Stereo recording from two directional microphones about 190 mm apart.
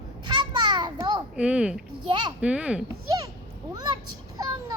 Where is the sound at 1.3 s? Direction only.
5° right (ahead or behind).